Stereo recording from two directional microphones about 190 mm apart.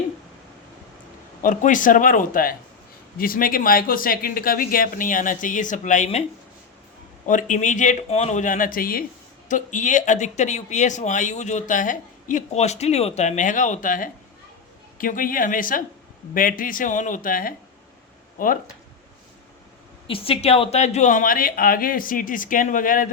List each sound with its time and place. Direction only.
1.4 s speech: 45° left (ahead or behind)
7.3 s speech: 40° left (ahead or behind)
20.1 s speech: 30° left (ahead or behind); by 23.1 s 45° left (ahead or behind)